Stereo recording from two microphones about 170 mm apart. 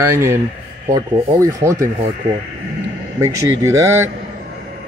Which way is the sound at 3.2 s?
15° right (ahead or behind).